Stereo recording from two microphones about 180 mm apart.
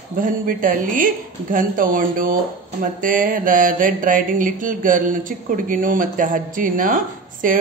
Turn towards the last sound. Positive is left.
turn(degrees=-50)  # may be behind; listen again after turning